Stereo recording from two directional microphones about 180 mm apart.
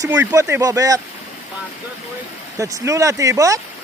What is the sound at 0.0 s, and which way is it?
Speech, 15° right (ahead or behind).